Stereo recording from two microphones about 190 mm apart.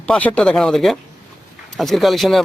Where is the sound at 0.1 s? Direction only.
5° left (ahead or behind).